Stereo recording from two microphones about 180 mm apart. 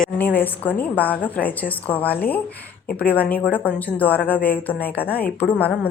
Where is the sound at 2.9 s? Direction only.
55° left (ahead or behind).